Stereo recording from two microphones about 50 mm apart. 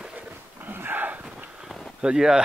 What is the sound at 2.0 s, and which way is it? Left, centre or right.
Speech, centre.